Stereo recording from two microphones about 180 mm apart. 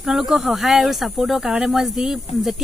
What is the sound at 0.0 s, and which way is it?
Speech, centre (ahead or behind).